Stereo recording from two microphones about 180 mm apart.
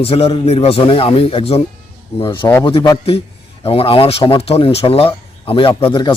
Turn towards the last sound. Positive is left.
turn(degrees=30)  # may be behind; listen again after turning